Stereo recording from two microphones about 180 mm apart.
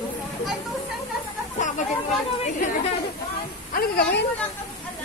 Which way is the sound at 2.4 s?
45° left (ahead or behind).